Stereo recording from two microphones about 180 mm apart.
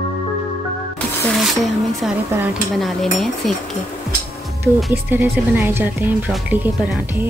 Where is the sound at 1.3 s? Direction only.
Centre (ahead or behind).